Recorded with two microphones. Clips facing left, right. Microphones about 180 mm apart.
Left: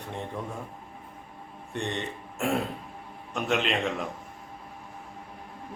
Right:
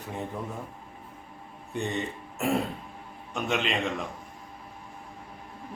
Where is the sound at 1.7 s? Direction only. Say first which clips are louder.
Right 1 dB; centre (ahead or behind).